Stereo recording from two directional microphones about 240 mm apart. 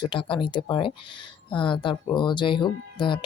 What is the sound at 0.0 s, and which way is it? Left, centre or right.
Speech, left.